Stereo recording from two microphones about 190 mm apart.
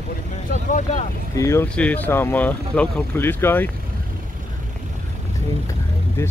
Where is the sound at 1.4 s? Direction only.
15° left (ahead or behind).